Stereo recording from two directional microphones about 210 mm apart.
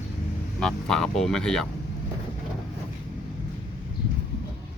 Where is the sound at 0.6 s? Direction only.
5° left (ahead or behind).